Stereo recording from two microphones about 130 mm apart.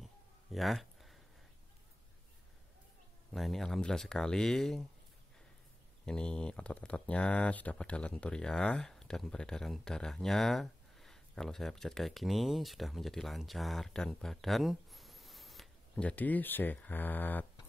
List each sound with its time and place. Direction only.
0.0 s a sound: centre (ahead or behind)
3.3 s speech: centre (ahead or behind)
6.0 s speech: 5° left (ahead or behind)